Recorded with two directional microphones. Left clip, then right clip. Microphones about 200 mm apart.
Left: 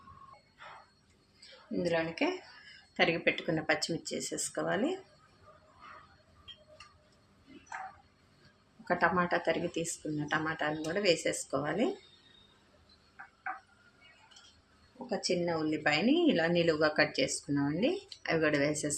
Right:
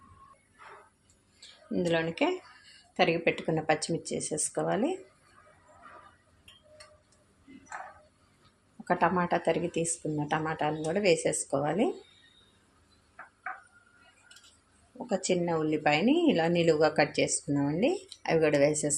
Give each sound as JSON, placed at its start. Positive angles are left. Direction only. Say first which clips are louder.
{"t": 1.9, "sound": "speech", "louder": "right 3 dB", "side_deg": -40}
{"t": 2.9, "sound": "speech", "louder": "right 3 dB", "side_deg": -30}
{"t": 8.9, "sound": "speech", "louder": "right 2 dB", "side_deg": -30}
{"t": 15.1, "sound": "speech", "louder": "right 3 dB", "side_deg": -40}